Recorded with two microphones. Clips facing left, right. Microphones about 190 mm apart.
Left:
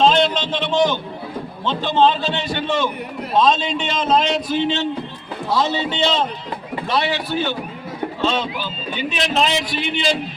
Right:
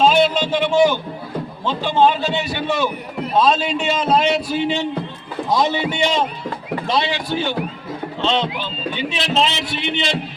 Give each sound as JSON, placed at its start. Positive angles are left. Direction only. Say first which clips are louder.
{"t": 0.0, "sound": "a man's voice", "louder": "right 1 dB", "side_deg": -10}